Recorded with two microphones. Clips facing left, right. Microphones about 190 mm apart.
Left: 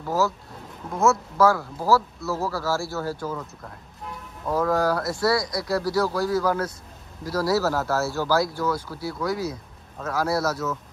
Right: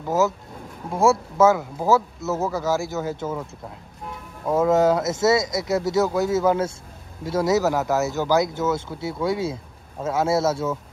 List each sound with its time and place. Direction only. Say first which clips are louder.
0.0 s speech: right 3 dB; 20° right (ahead or behind)
4.5 s speech: right 5 dB; 20° right (ahead or behind)